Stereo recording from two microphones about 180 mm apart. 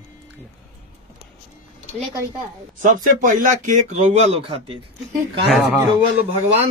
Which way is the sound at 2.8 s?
45° right (ahead or behind).